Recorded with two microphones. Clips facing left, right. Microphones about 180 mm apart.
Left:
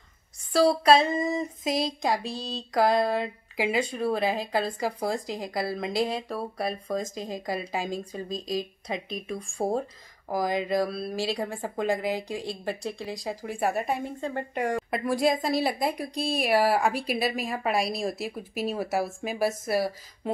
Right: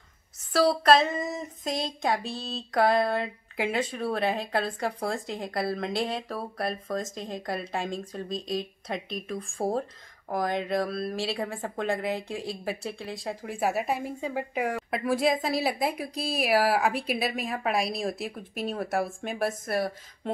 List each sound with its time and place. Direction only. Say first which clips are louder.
0.5 s speech: left 1 dB; centre (ahead or behind)